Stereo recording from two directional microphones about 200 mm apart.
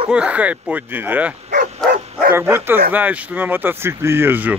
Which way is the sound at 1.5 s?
40° right (ahead or behind).